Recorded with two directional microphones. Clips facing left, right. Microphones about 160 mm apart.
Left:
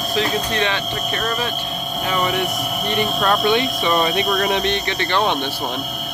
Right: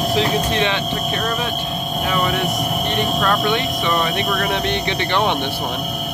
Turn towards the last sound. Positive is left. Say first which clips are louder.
# right 1 dB
turn(degrees=-15)  # may be behind; listen again after turning